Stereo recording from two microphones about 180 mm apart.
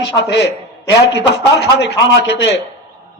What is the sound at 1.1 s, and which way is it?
A man's voice, 75° left (ahead or behind).